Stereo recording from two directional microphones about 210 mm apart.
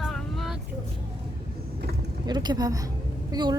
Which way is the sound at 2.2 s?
20° right (ahead or behind).